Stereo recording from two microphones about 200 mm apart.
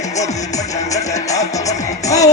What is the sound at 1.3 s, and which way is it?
Music, 15° left (ahead or behind).